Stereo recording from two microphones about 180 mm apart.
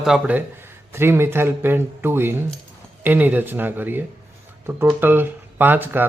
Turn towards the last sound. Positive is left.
turn(degrees=-10)  # may be behind; listen again after turning